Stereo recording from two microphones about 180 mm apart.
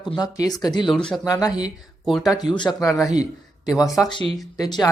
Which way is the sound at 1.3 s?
20° left (ahead or behind).